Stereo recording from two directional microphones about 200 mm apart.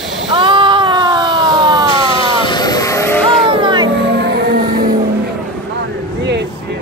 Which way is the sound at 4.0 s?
60° right (ahead or behind).